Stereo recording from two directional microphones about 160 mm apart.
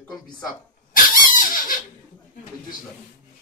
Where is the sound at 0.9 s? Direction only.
60° left (ahead or behind).